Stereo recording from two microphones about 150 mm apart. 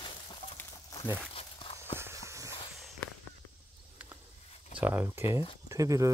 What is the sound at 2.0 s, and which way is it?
Walk, 20° right (ahead or behind).